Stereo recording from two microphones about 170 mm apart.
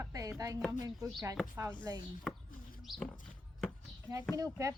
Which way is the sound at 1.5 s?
10° right (ahead or behind).